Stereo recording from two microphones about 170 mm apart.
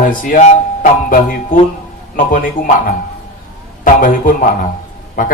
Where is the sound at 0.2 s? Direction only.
55° left (ahead or behind).